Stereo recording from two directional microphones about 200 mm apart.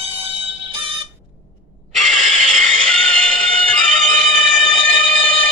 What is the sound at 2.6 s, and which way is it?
Music, 5° left (ahead or behind).